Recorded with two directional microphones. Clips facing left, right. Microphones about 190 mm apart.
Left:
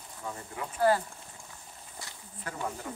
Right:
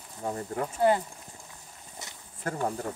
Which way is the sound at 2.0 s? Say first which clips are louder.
Right 2 dB; 20° right (ahead or behind).